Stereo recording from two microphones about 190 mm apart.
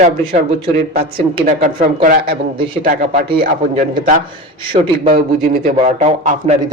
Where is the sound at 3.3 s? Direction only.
40° right (ahead or behind).